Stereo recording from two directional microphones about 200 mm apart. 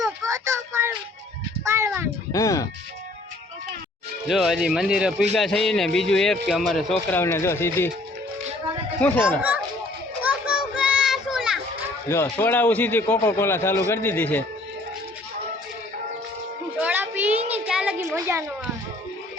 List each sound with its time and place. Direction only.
0.3 s child singing: 15° right (ahead or behind)
1.6 s a sound: 15° right (ahead or behind)
2.3 s a man's voice: 15° left (ahead or behind)
4.3 s a man's voice: centre (ahead or behind)
9.0 s speech: 10° left (ahead or behind)
9.4 s a sound: 5° right (ahead or behind)
10.2 s children playing: 5° right (ahead or behind)
12.0 s a man's voice: 10° left (ahead or behind)
16.8 s a sound: 10° right (ahead or behind)